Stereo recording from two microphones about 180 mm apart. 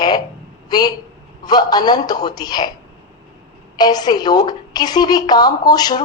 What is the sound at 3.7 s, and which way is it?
A woman's voice, 20° left (ahead or behind).